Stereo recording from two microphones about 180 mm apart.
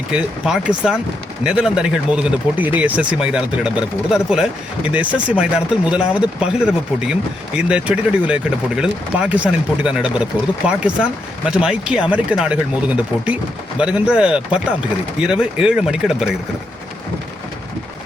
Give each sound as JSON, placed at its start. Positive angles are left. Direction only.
{"t": 0.1, "sound": "speech", "side_deg": -5}